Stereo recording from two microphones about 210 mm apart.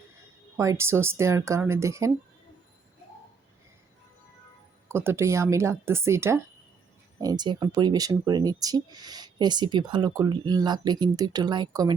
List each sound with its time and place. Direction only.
0.5 s speech: 15° right (ahead or behind)
4.9 s speech: 10° right (ahead or behind)